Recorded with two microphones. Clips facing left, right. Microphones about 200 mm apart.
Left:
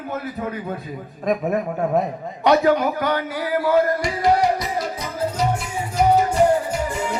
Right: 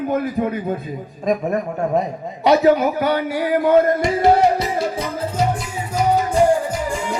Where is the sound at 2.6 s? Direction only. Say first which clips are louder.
Right 3 dB; 5° right (ahead or behind); by 5.0 s 25° right (ahead or behind).